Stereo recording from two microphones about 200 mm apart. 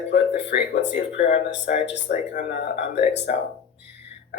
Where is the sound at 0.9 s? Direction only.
35° left (ahead or behind); by 2.2 s 50° left (ahead or behind).